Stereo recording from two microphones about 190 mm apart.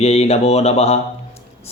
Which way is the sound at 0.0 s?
35° left (ahead or behind).